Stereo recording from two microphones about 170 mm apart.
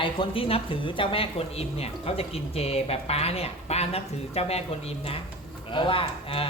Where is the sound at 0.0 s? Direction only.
30° left (ahead or behind).